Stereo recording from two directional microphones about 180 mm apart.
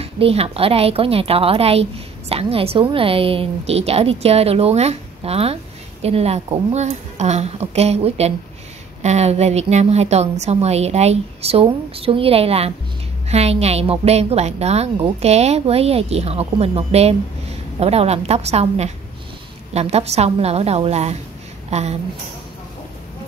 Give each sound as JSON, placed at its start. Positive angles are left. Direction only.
{"t": 0.0, "sound": "a woman's voice", "side_deg": -35}